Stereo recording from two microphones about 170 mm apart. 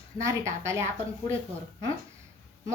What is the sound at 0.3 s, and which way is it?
Speech, 15° right (ahead or behind).